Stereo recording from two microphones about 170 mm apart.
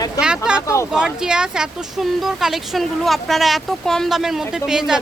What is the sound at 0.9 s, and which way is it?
Speech, 5° right (ahead or behind).